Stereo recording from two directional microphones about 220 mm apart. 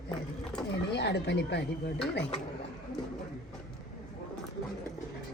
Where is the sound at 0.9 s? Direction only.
50° left (ahead or behind).